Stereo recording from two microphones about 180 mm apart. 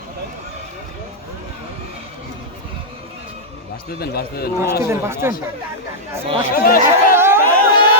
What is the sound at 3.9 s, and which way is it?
Speech, 60° left (ahead or behind).